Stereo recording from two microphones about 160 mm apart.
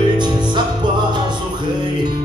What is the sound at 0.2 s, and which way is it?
Music, 30° right (ahead or behind).